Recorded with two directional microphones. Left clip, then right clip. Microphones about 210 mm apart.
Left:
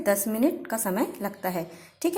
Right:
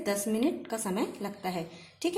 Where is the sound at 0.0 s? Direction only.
25° left (ahead or behind).